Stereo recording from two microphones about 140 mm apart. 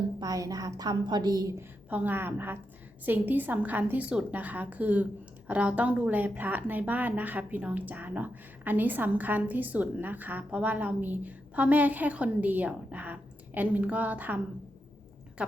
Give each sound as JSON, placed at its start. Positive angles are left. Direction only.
{"t": 0.2, "sound": "a woman's voice", "side_deg": -25}
{"t": 1.9, "sound": "a woman's voice", "side_deg": -10}